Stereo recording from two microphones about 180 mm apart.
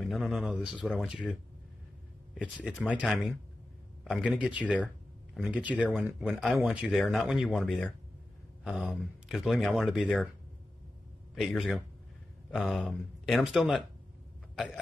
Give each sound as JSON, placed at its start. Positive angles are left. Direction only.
{"t": 0.0, "sound": "a man's voice", "side_deg": 0}
{"t": 11.3, "sound": "speech", "side_deg": 0}
{"t": 14.5, "sound": "a sound", "side_deg": 0}